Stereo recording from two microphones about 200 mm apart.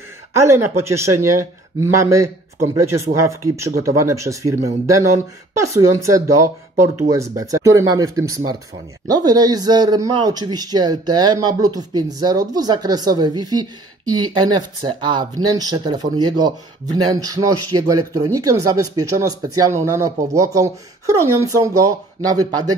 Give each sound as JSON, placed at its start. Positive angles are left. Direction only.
{"t": 0.4, "sound": "speech", "side_deg": -15}
{"t": 5.6, "sound": "a man's voice", "side_deg": -15}